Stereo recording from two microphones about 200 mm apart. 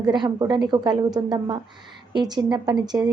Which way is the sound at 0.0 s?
20° right (ahead or behind).